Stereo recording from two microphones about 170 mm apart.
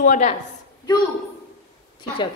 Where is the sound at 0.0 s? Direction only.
45° left (ahead or behind).